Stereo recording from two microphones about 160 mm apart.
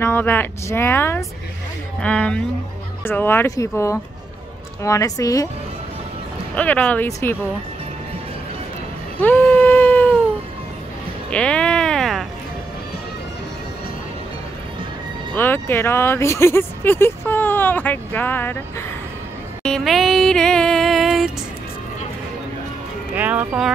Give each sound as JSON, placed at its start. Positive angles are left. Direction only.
{"t": 0.0, "sound": "a woman's voice", "side_deg": 15}
{"t": 6.5, "sound": "speech", "side_deg": 10}
{"t": 9.2, "sound": "a sound", "side_deg": 10}
{"t": 11.2, "sound": "music", "side_deg": 5}
{"t": 15.3, "sound": "speech", "side_deg": 15}
{"t": 19.6, "sound": "music", "side_deg": 0}
{"t": 23.1, "sound": "speech", "side_deg": -10}